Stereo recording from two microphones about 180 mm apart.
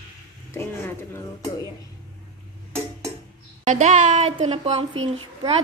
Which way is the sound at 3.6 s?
45° right (ahead or behind).